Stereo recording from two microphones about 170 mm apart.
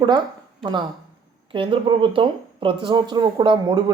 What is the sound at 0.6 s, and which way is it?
A man's voice, 25° right (ahead or behind).